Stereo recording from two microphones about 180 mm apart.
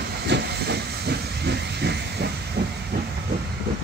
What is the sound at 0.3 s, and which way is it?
Hiss, 65° right (ahead or behind).